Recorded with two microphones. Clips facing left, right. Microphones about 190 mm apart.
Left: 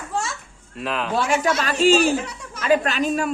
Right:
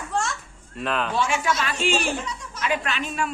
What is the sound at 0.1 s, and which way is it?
Children playing, 5° left (ahead or behind).